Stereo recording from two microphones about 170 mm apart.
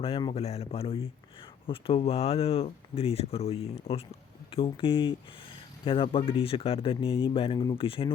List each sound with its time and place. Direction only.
0.0 s speech: 30° left (ahead or behind)